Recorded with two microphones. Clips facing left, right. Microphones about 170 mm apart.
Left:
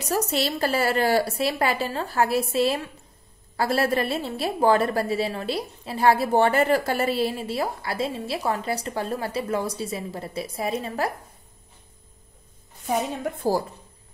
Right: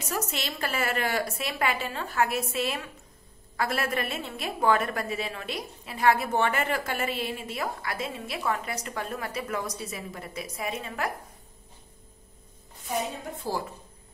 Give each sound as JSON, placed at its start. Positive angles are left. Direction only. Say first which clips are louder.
{"t": 0.0, "sound": "a woman's voice", "louder": "left 8 dB", "side_deg": 35}
{"t": 12.8, "sound": "a woman's voice", "louder": "left 6 dB", "side_deg": 60}